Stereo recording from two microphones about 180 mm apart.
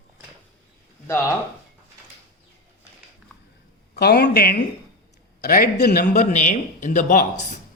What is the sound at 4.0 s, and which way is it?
A man's voice, 60° left (ahead or behind).